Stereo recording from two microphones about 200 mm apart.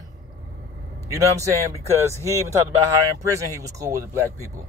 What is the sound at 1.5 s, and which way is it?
Speech, 15° right (ahead or behind).